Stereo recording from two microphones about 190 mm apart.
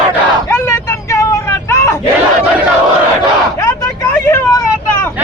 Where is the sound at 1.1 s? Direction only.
15° left (ahead or behind).